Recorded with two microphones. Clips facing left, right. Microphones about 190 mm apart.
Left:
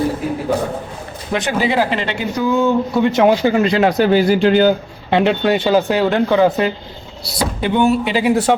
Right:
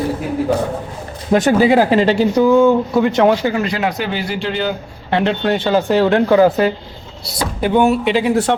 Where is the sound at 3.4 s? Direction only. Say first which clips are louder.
Left 4 dB; 25° left (ahead or behind); by 4.7 s 45° left (ahead or behind).